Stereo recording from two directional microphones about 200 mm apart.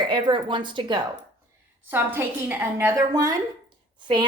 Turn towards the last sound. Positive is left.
turn(degrees=-20)  # may be behind; listen again after turning